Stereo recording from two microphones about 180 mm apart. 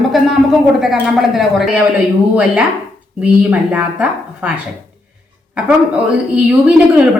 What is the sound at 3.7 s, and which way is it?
Speech, 5° right (ahead or behind).